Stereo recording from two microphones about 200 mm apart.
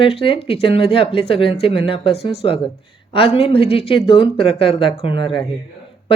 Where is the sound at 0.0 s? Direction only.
30° left (ahead or behind).